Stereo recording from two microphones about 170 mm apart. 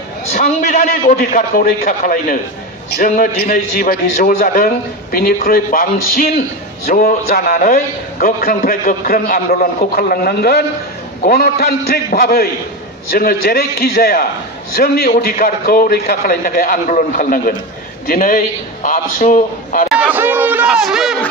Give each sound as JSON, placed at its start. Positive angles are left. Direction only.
{"t": 0.4, "sound": "a sound", "side_deg": 45}
{"t": 1.3, "sound": "a man's voice", "side_deg": 55}
{"t": 19.9, "sound": "speech", "side_deg": -10}